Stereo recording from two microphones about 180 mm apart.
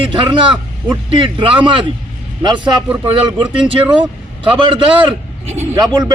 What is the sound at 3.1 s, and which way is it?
Speech, 25° right (ahead or behind).